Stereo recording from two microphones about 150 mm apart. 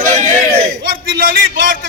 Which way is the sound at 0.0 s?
55° right (ahead or behind).